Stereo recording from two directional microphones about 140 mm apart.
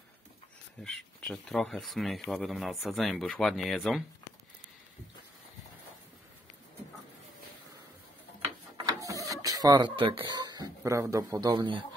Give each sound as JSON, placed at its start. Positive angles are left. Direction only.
{"t": 0.8, "sound": "speech", "side_deg": 0}
{"t": 8.7, "sound": "printer", "side_deg": -25}
{"t": 10.8, "sound": "a man's voice", "side_deg": -20}